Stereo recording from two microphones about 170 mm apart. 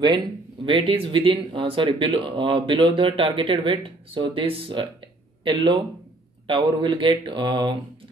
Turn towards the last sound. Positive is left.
turn(degrees=-25)  # may be behind; listen again after turning